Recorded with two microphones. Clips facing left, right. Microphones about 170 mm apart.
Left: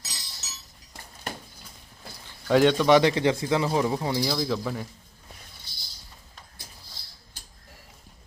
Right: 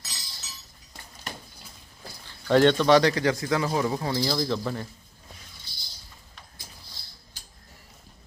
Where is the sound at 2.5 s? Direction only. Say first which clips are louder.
Even; 5° left (ahead or behind).